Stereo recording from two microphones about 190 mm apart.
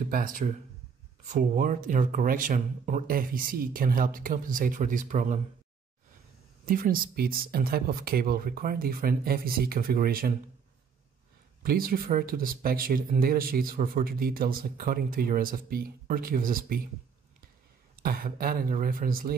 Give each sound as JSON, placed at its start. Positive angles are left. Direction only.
{"t": 0.1, "sound": "speech", "side_deg": -45}
{"t": 6.6, "sound": "speech", "side_deg": -50}
{"t": 11.6, "sound": "speech", "side_deg": -50}
{"t": 18.0, "sound": "speech", "side_deg": -50}